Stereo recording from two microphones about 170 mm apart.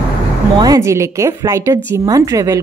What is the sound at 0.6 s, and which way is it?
A woman's voice, 20° right (ahead or behind).